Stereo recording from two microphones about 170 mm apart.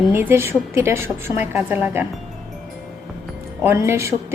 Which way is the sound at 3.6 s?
15° right (ahead or behind).